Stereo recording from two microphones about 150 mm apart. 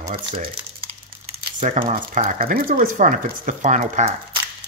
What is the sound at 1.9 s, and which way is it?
Speech, 75° right (ahead or behind).